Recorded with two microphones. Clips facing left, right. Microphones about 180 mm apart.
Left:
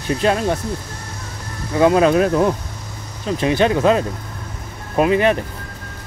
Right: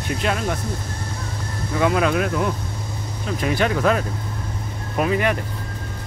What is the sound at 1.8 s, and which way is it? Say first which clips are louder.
Speech: left 6 dB; 30° left (ahead or behind).